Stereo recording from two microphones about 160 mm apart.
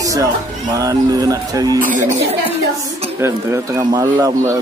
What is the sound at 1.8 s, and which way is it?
Speech, 55° right (ahead or behind).